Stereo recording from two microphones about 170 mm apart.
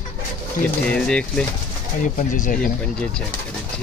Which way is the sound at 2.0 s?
50° left (ahead or behind).